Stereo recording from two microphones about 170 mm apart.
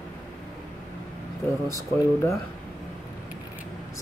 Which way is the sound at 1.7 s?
20° left (ahead or behind).